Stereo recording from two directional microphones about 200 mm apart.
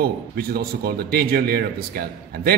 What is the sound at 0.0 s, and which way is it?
A man's voice, 50° right (ahead or behind).